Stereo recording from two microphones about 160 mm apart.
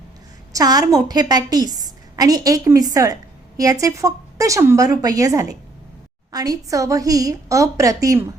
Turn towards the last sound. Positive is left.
turn(degrees=-20)  # may be behind; listen again after turning